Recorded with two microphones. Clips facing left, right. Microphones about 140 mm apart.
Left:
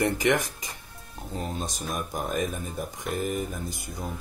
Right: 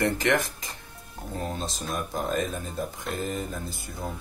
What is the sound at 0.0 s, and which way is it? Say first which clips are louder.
Speech: even; 15° left (ahead or behind).